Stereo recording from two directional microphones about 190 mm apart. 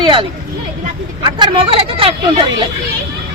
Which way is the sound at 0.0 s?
25° right (ahead or behind).